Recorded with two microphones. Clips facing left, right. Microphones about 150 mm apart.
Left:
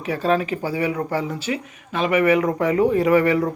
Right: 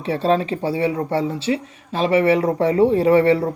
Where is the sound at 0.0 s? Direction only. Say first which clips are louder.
Right 2 dB; 30° right (ahead or behind).